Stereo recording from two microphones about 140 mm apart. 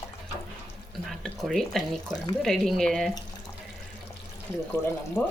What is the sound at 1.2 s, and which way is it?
Speech, 5° left (ahead or behind).